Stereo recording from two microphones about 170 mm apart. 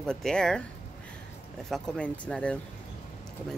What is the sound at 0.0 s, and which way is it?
Speech, 5° left (ahead or behind).